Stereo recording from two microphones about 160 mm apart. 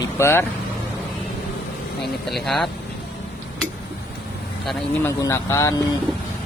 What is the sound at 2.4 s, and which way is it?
Speech, centre (ahead or behind).